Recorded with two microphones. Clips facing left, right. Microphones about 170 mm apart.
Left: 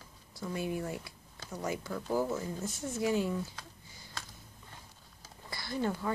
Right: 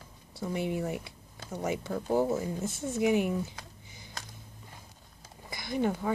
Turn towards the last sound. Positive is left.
turn(degrees=-15)  # may be behind; listen again after turning